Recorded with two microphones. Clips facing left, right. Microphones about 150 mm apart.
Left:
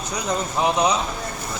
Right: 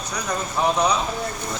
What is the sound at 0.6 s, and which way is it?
Speech, 20° left (ahead or behind).